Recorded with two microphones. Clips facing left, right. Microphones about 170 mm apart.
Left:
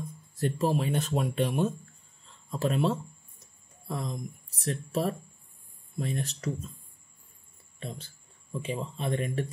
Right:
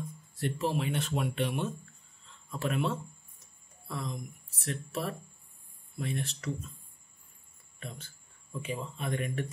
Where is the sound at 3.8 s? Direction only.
35° left (ahead or behind).